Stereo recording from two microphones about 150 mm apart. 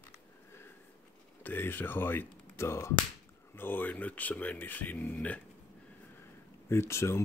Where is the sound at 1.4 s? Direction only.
15° left (ahead or behind).